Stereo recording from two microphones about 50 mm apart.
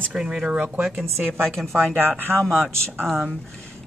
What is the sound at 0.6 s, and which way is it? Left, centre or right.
Speech, right.